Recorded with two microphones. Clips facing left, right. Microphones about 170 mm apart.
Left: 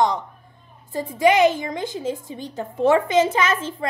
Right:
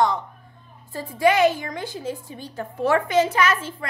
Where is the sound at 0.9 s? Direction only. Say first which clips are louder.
Left 2 dB; 20° left (ahead or behind).